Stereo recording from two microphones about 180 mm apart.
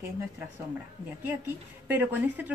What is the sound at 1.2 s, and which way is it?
A woman's voice, 10° right (ahead or behind).